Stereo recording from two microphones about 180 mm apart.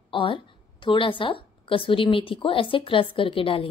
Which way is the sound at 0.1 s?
30° left (ahead or behind).